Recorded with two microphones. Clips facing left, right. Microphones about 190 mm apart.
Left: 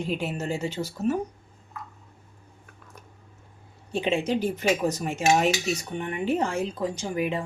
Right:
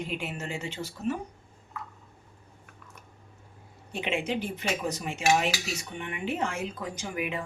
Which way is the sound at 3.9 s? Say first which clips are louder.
Left 5 dB; 35° left (ahead or behind).